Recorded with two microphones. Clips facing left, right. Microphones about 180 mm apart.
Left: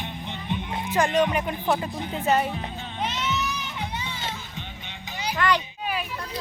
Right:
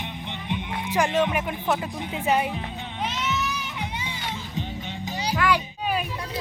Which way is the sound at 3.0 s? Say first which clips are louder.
Even; centre (ahead or behind).